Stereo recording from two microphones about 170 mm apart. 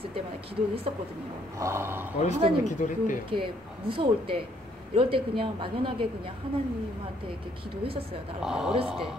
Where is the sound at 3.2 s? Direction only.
30° right (ahead or behind).